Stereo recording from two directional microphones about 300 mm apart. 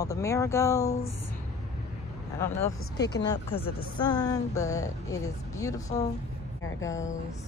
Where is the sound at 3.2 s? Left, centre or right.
Centre.